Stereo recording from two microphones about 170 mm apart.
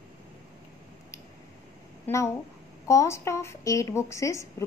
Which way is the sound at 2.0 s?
15° left (ahead or behind).